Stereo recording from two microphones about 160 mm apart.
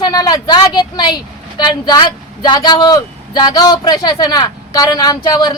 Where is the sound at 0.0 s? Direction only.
25° left (ahead or behind).